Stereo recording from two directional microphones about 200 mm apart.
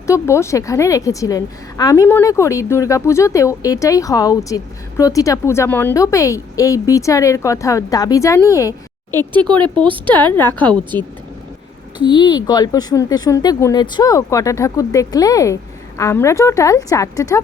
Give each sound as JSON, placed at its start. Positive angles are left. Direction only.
{"t": 0.1, "sound": "a woman's voice", "side_deg": 15}
{"t": 9.8, "sound": "speech", "side_deg": -25}
{"t": 10.2, "sound": "a woman's voice", "side_deg": 10}
{"t": 11.9, "sound": "a woman's voice", "side_deg": 20}